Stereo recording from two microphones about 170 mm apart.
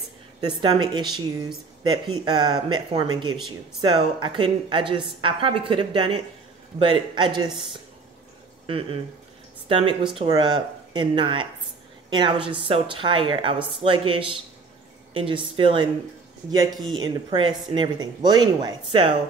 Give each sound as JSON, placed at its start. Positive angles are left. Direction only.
{"t": 0.4, "sound": "a woman's voice", "side_deg": -25}